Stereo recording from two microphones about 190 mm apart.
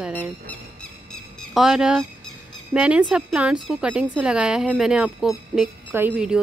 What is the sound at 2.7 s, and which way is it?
A woman's voice, 5° right (ahead or behind).